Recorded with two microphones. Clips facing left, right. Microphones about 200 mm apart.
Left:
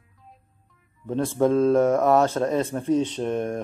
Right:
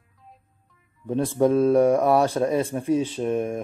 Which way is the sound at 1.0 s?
15° right (ahead or behind).